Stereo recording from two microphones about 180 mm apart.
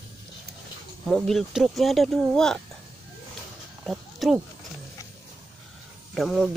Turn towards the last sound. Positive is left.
turn(degrees=0)  # may be behind; listen again after turning